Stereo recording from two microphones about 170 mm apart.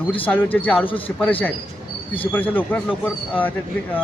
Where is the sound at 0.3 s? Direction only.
10° left (ahead or behind).